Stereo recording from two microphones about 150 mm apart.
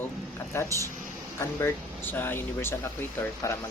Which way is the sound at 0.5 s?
15° left (ahead or behind).